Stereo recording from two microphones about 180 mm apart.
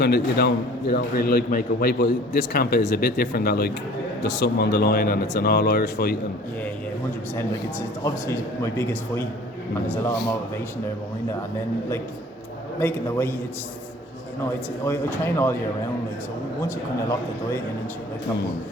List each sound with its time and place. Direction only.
0.0 s a man's voice: 65° left (ahead or behind)
7.3 s speech: 15° left (ahead or behind)
12.8 s speech: 10° left (ahead or behind)
14.8 s speech: 15° left (ahead or behind)